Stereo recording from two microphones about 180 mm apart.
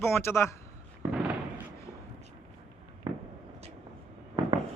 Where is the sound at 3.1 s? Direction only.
25° right (ahead or behind).